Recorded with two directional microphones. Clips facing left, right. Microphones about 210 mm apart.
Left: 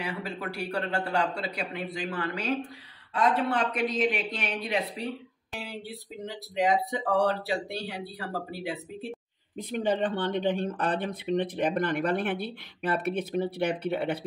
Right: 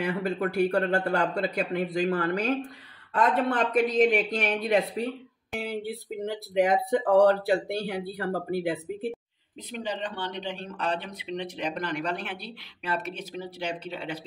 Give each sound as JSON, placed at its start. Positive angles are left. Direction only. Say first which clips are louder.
{"t": 0.0, "sound": "speech", "louder": "right 7 dB", "side_deg": -50}
{"t": 6.2, "sound": "speech", "louder": "right 3 dB", "side_deg": -50}
{"t": 9.7, "sound": "speech", "louder": "left 6 dB", "side_deg": 50}